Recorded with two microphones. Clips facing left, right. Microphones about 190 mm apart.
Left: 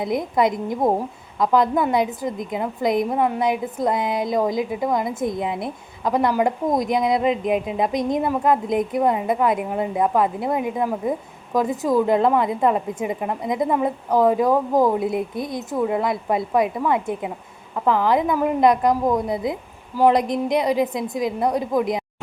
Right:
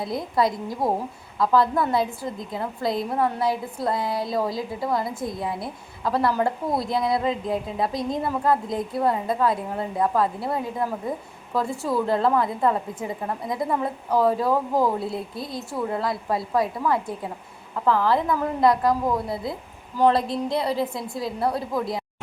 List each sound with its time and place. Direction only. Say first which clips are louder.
0.0 s a woman's voice: left 3 dB; 20° left (ahead or behind)